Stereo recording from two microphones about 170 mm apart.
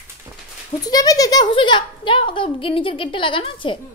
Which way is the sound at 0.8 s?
20° left (ahead or behind).